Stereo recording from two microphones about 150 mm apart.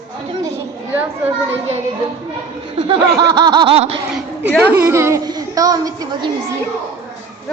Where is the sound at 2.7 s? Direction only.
30° right (ahead or behind).